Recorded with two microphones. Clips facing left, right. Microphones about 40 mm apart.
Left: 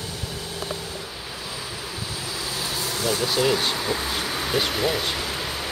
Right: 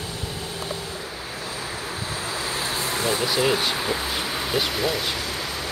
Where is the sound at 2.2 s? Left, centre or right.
Right.